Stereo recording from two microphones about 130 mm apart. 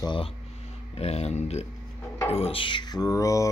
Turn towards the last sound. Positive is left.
turn(degrees=25)  # may be behind; listen again after turning